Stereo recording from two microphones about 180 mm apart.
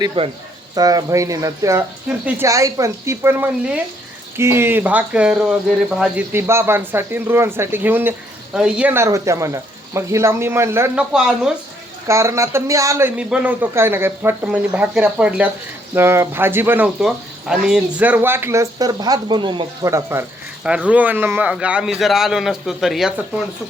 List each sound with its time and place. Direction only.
0.2 s speech: 35° right (ahead or behind)
0.8 s a man's voice: 20° right (ahead or behind); by 11.5 s 5° right (ahead or behind)
12.0 s a man's voice: 15° right (ahead or behind)